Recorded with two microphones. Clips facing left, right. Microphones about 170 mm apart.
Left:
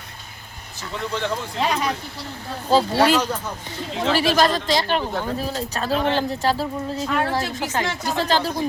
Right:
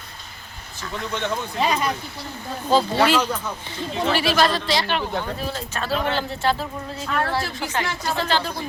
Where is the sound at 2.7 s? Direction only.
10° left (ahead or behind).